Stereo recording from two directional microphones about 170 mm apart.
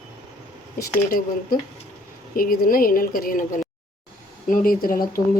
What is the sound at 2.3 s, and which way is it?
A woman's voice, 60° left (ahead or behind).